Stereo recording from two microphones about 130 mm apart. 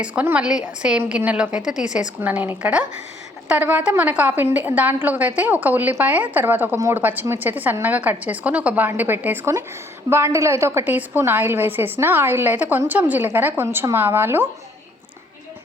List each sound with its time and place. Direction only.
0.0 s a woman's voice: 10° right (ahead or behind)